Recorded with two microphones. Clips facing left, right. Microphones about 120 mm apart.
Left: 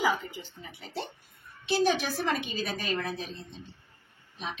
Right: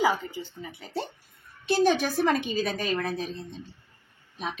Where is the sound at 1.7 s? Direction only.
50° right (ahead or behind).